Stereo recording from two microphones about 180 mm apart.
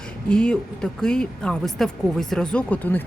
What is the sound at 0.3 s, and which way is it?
Speech, 5° left (ahead or behind).